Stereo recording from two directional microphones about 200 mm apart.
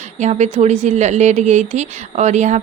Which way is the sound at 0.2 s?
35° right (ahead or behind).